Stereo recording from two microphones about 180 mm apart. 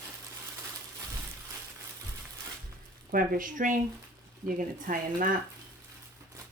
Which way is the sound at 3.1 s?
50° right (ahead or behind).